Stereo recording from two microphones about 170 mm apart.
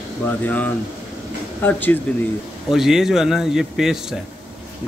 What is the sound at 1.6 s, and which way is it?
Speech, 10° left (ahead or behind).